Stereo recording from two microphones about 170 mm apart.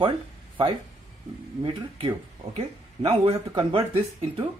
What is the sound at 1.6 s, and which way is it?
Speech, 30° right (ahead or behind).